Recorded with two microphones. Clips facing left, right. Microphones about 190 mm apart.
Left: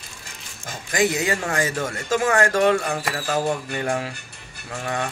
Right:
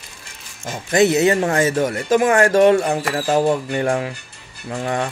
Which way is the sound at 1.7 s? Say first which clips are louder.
Right 8 dB; 40° right (ahead or behind).